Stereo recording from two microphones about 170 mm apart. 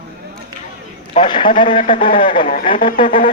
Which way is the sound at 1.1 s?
25° left (ahead or behind).